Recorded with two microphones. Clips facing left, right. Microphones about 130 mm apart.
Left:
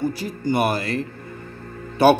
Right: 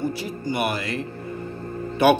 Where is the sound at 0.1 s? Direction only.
40° left (ahead or behind).